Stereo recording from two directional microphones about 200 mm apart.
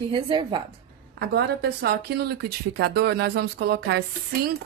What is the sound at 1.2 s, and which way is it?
A woman's voice, 55° right (ahead or behind).